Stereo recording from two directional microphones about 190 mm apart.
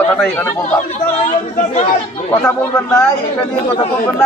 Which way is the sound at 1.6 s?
35° left (ahead or behind).